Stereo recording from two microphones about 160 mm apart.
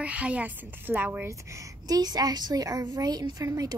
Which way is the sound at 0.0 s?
10° right (ahead or behind).